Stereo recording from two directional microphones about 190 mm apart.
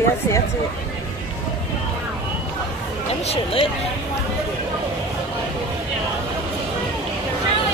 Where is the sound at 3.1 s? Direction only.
35° left (ahead or behind).